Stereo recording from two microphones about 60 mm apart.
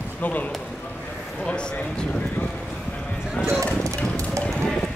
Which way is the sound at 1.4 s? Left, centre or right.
Centre.